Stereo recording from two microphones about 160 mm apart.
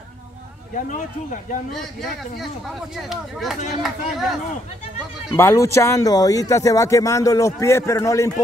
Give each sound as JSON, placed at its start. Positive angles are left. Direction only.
{"t": 0.7, "sound": "speech", "side_deg": 50}
{"t": 1.7, "sound": "speech", "side_deg": 0}
{"t": 5.3, "sound": "speech", "side_deg": 20}